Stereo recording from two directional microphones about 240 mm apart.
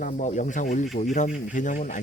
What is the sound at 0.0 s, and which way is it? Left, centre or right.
Speech, left.